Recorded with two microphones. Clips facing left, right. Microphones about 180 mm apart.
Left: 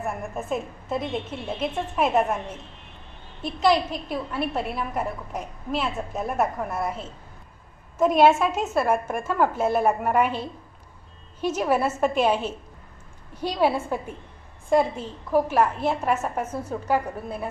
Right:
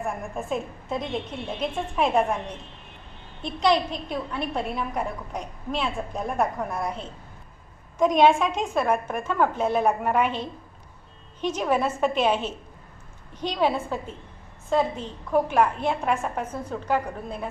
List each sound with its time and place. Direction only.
0.0 s a woman's voice: centre (ahead or behind)